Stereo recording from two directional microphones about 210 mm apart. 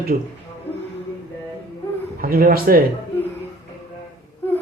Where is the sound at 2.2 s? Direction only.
45° right (ahead or behind).